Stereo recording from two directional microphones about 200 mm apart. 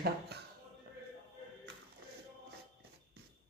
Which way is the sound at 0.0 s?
55° right (ahead or behind).